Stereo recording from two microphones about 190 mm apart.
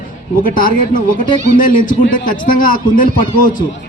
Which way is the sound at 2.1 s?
45° left (ahead or behind).